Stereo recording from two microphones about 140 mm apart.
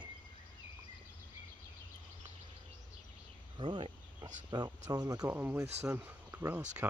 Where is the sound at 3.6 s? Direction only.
35° right (ahead or behind).